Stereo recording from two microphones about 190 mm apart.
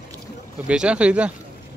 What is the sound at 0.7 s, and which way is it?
Speech, 5° right (ahead or behind).